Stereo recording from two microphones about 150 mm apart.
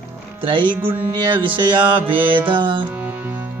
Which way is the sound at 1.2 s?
35° right (ahead or behind).